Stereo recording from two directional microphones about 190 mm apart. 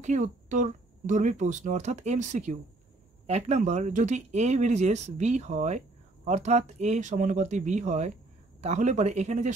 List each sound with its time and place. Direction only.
0.0 s speech: 40° right (ahead or behind)